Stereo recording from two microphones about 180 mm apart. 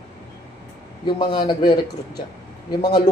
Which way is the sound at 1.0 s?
25° left (ahead or behind).